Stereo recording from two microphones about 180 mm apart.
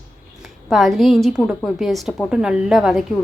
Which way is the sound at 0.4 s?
Centre (ahead or behind).